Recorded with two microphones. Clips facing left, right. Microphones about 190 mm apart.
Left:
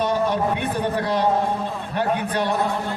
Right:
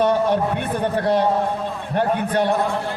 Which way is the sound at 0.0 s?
55° right (ahead or behind).